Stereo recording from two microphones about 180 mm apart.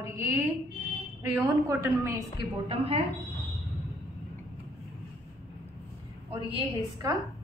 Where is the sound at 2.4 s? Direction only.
35° right (ahead or behind).